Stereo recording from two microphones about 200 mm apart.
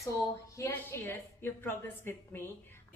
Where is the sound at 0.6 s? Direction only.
10° left (ahead or behind).